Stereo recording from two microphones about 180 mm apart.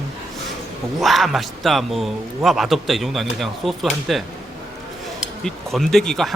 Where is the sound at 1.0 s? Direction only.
Centre (ahead or behind).